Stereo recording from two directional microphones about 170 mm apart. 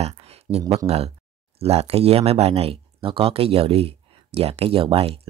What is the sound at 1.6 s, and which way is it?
Speech, 35° right (ahead or behind).